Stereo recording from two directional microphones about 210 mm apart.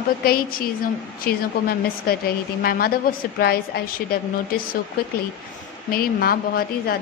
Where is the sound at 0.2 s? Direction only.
45° left (ahead or behind).